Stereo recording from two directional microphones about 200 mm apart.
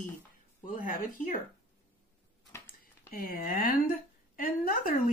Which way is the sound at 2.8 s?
45° left (ahead or behind).